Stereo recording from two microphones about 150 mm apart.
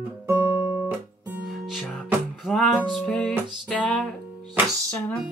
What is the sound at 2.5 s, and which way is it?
Music, centre (ahead or behind).